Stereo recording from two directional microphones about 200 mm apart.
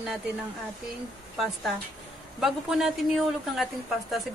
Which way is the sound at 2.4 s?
Centre (ahead or behind).